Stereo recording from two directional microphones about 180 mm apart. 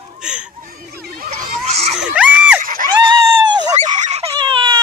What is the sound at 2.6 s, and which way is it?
Screaming, 50° right (ahead or behind).